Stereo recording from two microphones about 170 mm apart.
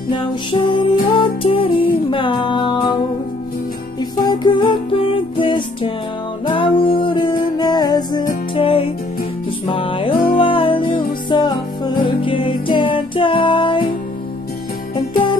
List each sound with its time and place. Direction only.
0.1 s music: 30° left (ahead or behind)
4.2 s music: 25° left (ahead or behind)